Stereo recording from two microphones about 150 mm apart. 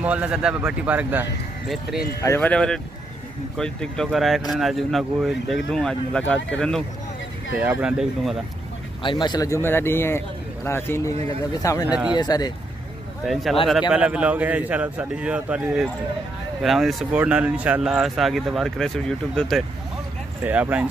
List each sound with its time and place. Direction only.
0.0 s a man's voice: 10° right (ahead or behind)
2.2 s a man's voice: 15° left (ahead or behind)
7.6 s a man's voice: 10° right (ahead or behind)
9.0 s a man's voice: 30° left (ahead or behind)
11.8 s a man's voice: 5° right (ahead or behind)
12.2 s speech: 25° left (ahead or behind)
13.2 s a man's voice: centre (ahead or behind)
20.4 s a man's voice: 10° right (ahead or behind)